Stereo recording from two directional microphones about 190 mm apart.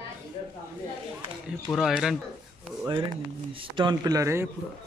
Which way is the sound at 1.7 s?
Centre (ahead or behind).